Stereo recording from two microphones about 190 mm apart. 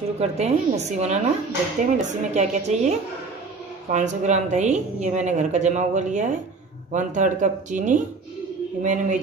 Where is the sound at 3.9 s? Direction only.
40° right (ahead or behind).